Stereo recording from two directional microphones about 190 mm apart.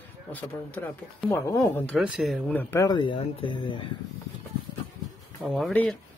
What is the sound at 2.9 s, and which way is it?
Speech, 25° left (ahead or behind).